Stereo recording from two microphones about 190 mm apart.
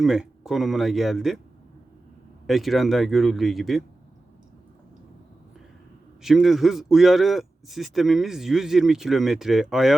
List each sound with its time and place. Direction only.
0.0 s a man's voice: centre (ahead or behind)
2.5 s a man's voice: centre (ahead or behind)
6.2 s a man's voice: centre (ahead or behind)